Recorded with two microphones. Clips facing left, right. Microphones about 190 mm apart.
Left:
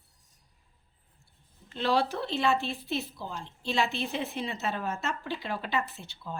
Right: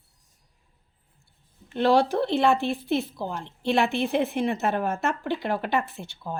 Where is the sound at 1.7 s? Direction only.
55° right (ahead or behind).